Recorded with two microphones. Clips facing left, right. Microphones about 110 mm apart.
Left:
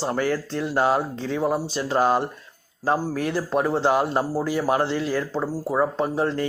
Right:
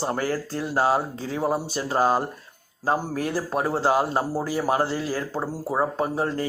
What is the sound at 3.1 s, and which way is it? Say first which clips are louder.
Speech: left 2 dB; 35° right (ahead or behind).